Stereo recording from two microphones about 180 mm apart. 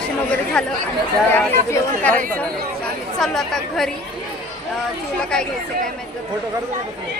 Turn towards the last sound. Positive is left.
turn(degrees=5)  # may be behind; listen again after turning